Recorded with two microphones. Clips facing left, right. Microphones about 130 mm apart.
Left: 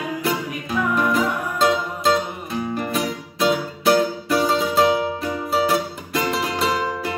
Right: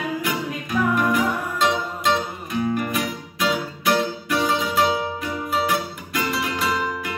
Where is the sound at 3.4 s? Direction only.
30° left (ahead or behind).